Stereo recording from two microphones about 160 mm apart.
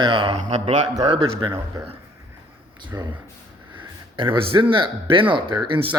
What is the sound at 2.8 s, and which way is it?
Speech, 25° right (ahead or behind).